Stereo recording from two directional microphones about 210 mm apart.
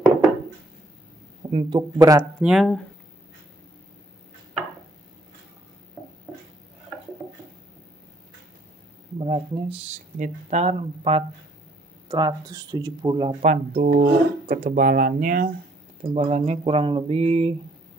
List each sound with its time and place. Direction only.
1.5 s speech: 25° right (ahead or behind)
2.4 s speech: centre (ahead or behind)
9.2 s speech: 25° right (ahead or behind)
13.4 s speech: 35° right (ahead or behind)
16.0 s speech: 30° right (ahead or behind)